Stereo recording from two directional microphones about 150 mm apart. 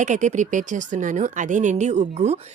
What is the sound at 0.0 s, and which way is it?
Speech, 55° right (ahead or behind).